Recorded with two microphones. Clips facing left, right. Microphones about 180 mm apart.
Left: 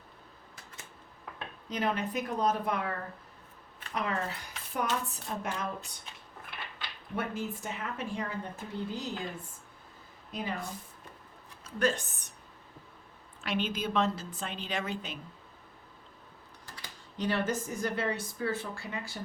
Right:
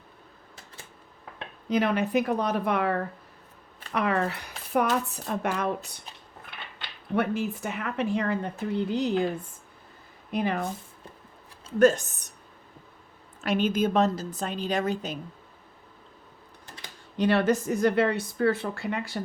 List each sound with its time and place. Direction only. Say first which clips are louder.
1.7 s a woman's voice: right 8 dB; 70° right (ahead or behind)
7.2 s a woman's voice: right 8 dB; 70° right (ahead or behind)
10.3 s speech: right 9 dB; 65° right (ahead or behind)
11.8 s speech: right 10 dB; 45° right (ahead or behind)
13.4 s a woman's voice: right 8 dB; 45° right (ahead or behind)
16.6 s a sound: right 3 dB; 20° right (ahead or behind)
17.2 s a woman's voice: right 8 dB; 70° right (ahead or behind)